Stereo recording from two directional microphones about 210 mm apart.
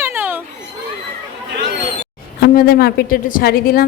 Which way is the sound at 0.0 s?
10° right (ahead or behind).